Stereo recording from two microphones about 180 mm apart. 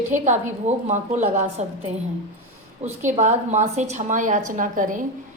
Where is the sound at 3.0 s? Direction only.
40° right (ahead or behind).